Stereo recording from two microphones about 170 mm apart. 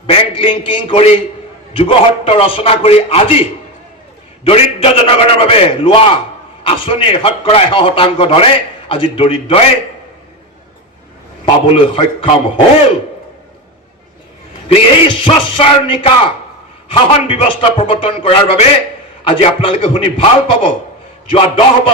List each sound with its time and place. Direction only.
0.1 s a man's voice: 30° left (ahead or behind)
4.4 s a man's voice: 35° left (ahead or behind)
11.4 s a man's voice: 35° left (ahead or behind)
14.7 s a man's voice: 35° left (ahead or behind)